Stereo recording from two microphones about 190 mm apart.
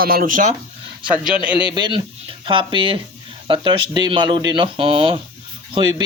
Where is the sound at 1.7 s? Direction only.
20° right (ahead or behind).